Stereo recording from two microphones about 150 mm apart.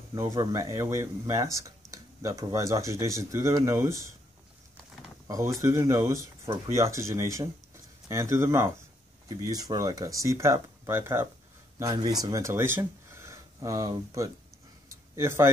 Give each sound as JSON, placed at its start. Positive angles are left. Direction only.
{"t": 0.1, "sound": "speech", "side_deg": -20}
{"t": 5.3, "sound": "speech", "side_deg": -20}
{"t": 11.8, "sound": "speech", "side_deg": -25}
{"t": 14.9, "sound": "a sound", "side_deg": -15}